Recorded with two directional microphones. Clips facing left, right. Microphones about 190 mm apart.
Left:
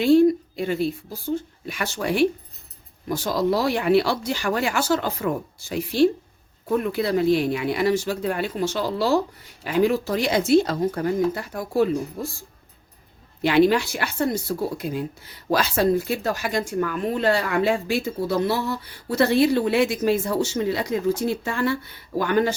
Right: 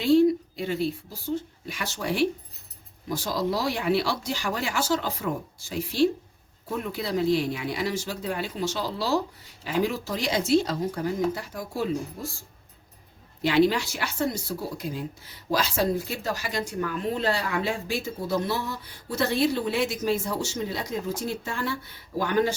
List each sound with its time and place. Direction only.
0.0 s a sound: 55° left (ahead or behind)
1.6 s speech: 60° left (ahead or behind)
13.4 s speech: 60° left (ahead or behind)